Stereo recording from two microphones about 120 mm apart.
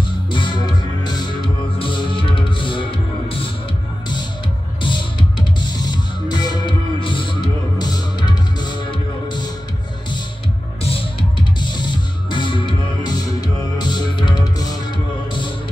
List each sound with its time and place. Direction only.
0.3 s music: 40° left (ahead or behind)
4.8 s music: 40° left (ahead or behind)
10.8 s music: 50° left (ahead or behind); by 14.8 s 35° left (ahead or behind)